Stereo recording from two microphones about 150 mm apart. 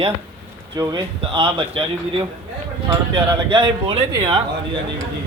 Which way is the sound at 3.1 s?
35° right (ahead or behind).